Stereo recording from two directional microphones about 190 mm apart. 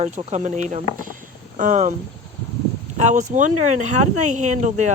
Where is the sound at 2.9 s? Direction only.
40° right (ahead or behind).